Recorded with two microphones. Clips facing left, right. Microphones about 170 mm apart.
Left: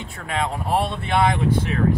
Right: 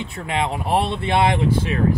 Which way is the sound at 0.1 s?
25° right (ahead or behind).